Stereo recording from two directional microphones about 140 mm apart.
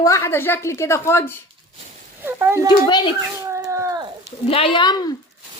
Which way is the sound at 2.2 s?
15° right (ahead or behind).